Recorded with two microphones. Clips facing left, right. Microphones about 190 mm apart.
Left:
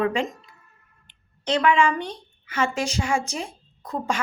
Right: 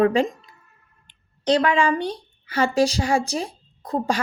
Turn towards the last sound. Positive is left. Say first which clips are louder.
# right 4 dB
turn(degrees=-35)  # may be behind; listen again after turning